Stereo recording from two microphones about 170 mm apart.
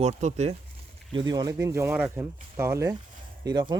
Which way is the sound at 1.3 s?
25° right (ahead or behind).